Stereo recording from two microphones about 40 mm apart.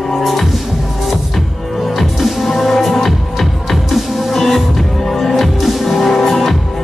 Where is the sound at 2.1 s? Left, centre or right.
Centre.